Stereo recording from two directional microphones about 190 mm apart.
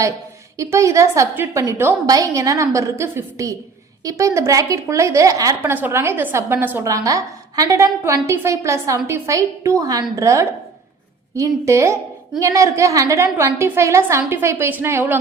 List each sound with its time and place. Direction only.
0.5 s a woman's voice: 15° right (ahead or behind)